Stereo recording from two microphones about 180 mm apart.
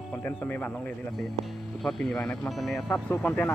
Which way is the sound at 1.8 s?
5° left (ahead or behind).